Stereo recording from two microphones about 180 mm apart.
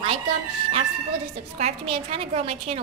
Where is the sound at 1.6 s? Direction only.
35° right (ahead or behind).